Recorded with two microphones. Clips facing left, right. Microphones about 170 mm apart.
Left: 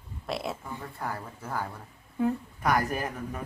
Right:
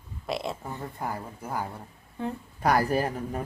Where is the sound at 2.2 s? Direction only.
10° left (ahead or behind).